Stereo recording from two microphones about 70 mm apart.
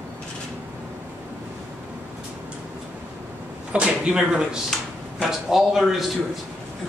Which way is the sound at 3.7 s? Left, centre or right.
Centre.